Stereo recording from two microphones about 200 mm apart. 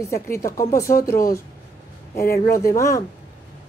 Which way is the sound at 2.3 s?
50° left (ahead or behind).